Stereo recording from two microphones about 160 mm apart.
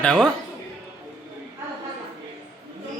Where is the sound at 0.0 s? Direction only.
5° left (ahead or behind).